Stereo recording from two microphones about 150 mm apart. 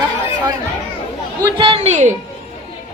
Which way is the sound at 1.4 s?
30° right (ahead or behind).